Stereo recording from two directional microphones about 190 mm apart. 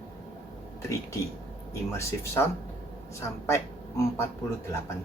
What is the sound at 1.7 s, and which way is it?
Speech, 15° left (ahead or behind).